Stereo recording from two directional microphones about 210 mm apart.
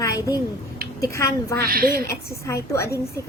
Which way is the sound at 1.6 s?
45° right (ahead or behind).